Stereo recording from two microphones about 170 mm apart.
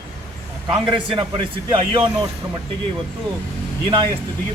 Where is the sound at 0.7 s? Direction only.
Centre (ahead or behind).